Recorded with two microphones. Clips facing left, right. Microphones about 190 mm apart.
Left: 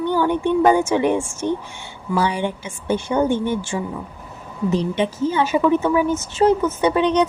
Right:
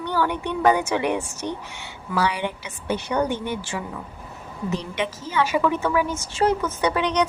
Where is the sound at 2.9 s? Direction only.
25° left (ahead or behind).